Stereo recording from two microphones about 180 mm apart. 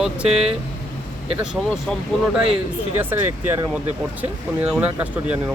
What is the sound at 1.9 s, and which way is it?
Speech, 5° left (ahead or behind).